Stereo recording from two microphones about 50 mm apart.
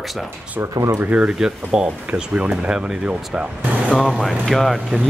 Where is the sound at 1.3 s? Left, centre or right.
Centre.